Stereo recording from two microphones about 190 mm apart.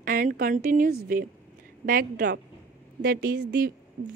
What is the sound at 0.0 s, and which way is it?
A woman's voice, 50° right (ahead or behind).